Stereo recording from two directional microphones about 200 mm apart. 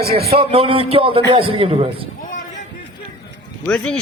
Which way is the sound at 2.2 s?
40° left (ahead or behind).